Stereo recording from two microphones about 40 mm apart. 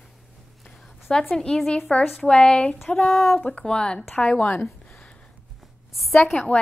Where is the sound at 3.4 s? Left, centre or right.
Left.